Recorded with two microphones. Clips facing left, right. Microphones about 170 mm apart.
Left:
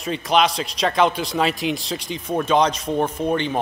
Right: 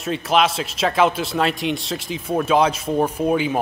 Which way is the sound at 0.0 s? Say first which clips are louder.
Even; centre (ahead or behind).